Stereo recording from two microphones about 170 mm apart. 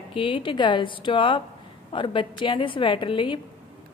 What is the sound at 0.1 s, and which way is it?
A woman's voice, 30° left (ahead or behind).